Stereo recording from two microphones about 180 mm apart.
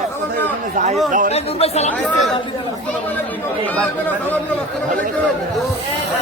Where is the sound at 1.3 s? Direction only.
35° left (ahead or behind).